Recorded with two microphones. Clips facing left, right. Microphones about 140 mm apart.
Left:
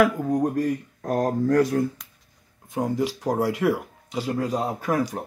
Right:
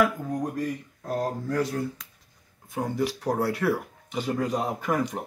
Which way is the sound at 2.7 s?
15° left (ahead or behind).